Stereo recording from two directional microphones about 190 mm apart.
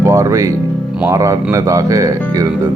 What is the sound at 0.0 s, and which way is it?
Music, 15° right (ahead or behind).